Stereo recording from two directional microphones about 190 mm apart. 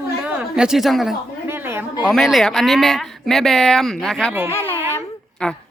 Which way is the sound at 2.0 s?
Centre (ahead or behind).